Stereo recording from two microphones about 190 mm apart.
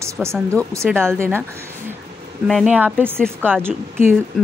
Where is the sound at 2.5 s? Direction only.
5° right (ahead or behind).